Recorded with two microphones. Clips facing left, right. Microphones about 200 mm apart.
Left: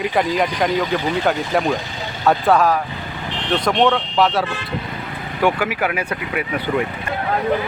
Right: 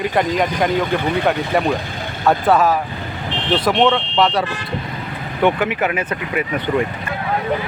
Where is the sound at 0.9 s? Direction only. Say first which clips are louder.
Right 1 dB; 55° right (ahead or behind).